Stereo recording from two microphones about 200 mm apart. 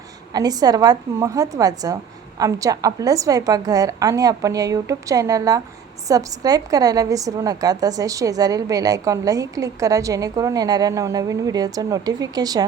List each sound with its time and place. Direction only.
0.3 s a woman's voice: 20° right (ahead or behind)